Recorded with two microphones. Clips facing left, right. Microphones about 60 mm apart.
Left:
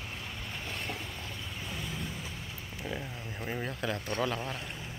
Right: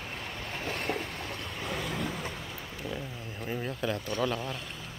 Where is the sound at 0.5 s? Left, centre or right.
Right.